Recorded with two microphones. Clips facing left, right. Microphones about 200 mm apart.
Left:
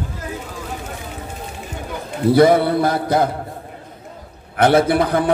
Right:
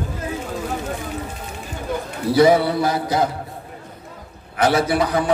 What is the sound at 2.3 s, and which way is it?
Mantra, 55° left (ahead or behind).